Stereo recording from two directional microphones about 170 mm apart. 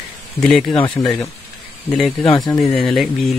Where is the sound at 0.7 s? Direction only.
30° left (ahead or behind).